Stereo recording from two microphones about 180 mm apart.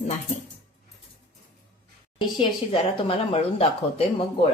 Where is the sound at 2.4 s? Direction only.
30° left (ahead or behind).